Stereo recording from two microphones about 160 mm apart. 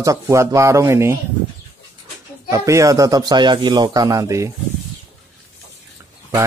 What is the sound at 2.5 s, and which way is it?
A man's voice, 20° right (ahead or behind).